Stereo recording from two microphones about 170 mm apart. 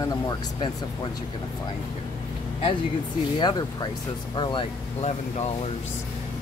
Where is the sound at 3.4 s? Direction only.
25° left (ahead or behind).